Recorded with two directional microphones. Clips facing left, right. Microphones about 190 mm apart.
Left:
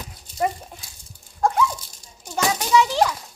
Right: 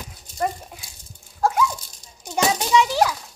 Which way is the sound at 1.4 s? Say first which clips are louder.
Even; 5° right (ahead or behind).